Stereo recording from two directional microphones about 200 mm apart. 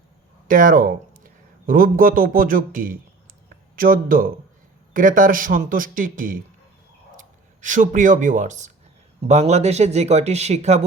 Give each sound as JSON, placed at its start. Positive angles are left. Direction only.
{"t": 0.4, "sound": "a man's voice", "side_deg": -45}
{"t": 3.5, "sound": "a sound", "side_deg": -45}
{"t": 4.9, "sound": "a man's voice", "side_deg": -45}